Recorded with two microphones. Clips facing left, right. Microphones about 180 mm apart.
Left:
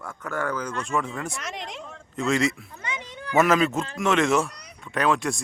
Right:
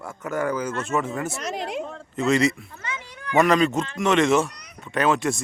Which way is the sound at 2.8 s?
20° left (ahead or behind).